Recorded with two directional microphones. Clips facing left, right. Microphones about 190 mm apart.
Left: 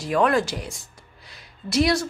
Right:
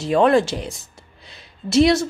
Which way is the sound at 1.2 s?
25° right (ahead or behind).